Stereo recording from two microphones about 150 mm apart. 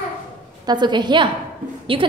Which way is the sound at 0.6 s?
30° right (ahead or behind).